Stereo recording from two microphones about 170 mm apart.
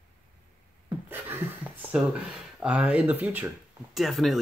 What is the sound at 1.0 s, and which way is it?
Speech, 10° right (ahead or behind).